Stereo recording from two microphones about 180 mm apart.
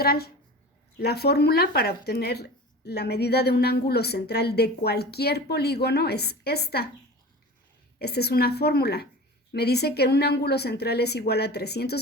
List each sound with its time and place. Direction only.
0.0 s speech: 60° left (ahead or behind)
7.9 s speech: 65° left (ahead or behind)